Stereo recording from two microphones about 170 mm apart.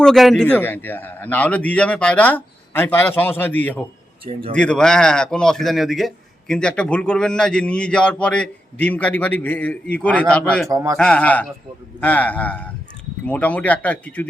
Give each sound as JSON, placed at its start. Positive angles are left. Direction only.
{"t": 0.0, "sound": "a man's voice", "side_deg": 0}
{"t": 10.7, "sound": "a man's voice", "side_deg": -20}
{"t": 10.9, "sound": "a man's voice", "side_deg": 5}